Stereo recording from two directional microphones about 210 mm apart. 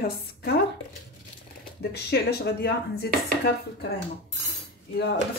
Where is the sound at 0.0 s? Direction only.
50° left (ahead or behind).